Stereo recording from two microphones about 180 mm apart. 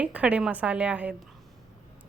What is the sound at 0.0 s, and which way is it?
A woman's voice, 5° right (ahead or behind).